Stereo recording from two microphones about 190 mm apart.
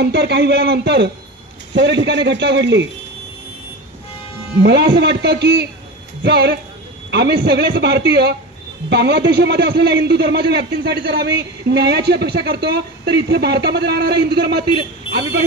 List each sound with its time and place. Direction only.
0.0 s a man's voice: 60° right (ahead or behind)
4.6 s a man's voice: 60° right (ahead or behind)